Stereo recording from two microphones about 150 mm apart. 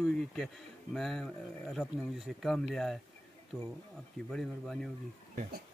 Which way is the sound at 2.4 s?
Centre (ahead or behind).